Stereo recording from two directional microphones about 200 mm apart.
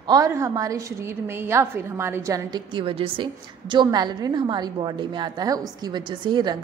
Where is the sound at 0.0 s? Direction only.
20° right (ahead or behind).